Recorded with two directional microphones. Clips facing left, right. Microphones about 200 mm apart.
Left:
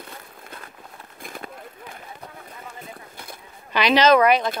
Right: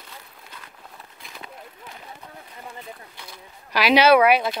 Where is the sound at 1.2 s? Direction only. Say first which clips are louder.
Left 7 dB; 50° left (ahead or behind).